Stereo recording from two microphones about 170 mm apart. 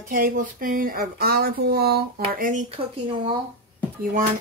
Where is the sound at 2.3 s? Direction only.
50° right (ahead or behind).